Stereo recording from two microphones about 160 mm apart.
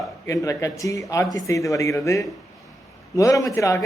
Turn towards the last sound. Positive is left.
turn(degrees=20)  # may be behind; listen again after turning